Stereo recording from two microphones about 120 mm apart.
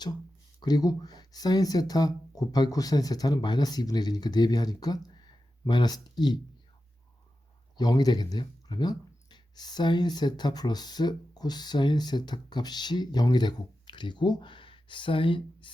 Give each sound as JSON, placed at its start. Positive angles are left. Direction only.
{"t": 0.6, "sound": "speech", "side_deg": 35}
{"t": 7.8, "sound": "speech", "side_deg": 35}